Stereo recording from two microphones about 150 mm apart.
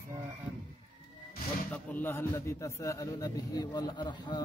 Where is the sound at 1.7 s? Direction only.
10° left (ahead or behind); by 4.4 s 30° left (ahead or behind).